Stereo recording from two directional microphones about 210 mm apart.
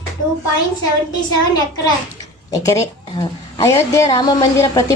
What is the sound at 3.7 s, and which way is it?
A woman's voice, 15° left (ahead or behind).